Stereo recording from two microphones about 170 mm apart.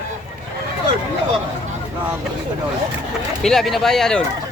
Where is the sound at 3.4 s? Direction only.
Centre (ahead or behind).